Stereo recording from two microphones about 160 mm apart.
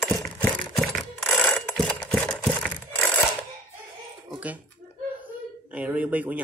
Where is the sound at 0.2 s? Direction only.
5° left (ahead or behind).